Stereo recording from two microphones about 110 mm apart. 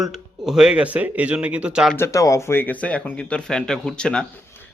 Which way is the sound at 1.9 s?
25° left (ahead or behind).